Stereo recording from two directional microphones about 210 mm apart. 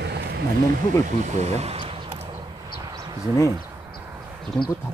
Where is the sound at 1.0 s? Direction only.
35° right (ahead or behind).